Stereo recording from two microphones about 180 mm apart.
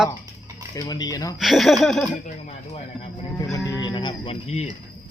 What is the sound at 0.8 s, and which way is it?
Cricket, 20° left (ahead or behind).